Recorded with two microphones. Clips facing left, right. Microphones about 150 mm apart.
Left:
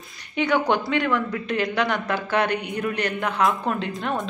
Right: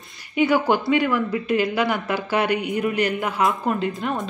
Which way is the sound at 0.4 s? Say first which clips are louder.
Right 2 dB; 5° right (ahead or behind).